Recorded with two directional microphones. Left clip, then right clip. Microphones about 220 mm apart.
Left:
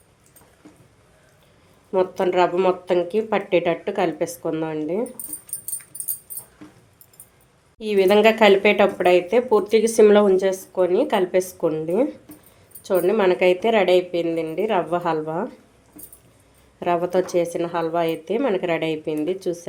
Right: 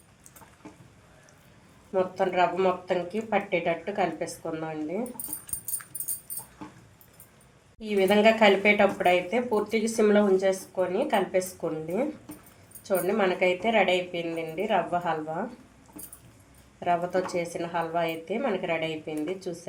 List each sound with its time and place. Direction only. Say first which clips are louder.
1.9 s speech: left 6 dB; 45° left (ahead or behind)
7.8 s speech: left 7 dB; 45° left (ahead or behind)
16.8 s speech: left 5 dB; 45° left (ahead or behind)